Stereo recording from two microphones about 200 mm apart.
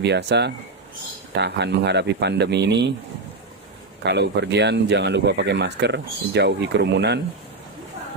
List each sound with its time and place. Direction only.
0.0 s speech: 55° right (ahead or behind)
4.0 s speech: 60° right (ahead or behind)